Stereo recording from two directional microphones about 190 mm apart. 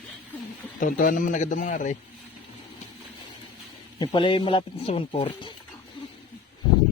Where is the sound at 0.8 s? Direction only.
45° left (ahead or behind).